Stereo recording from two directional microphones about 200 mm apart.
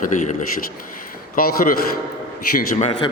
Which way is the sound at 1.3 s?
45° left (ahead or behind).